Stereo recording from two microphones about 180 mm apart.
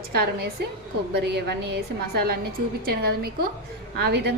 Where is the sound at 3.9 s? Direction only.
70° right (ahead or behind).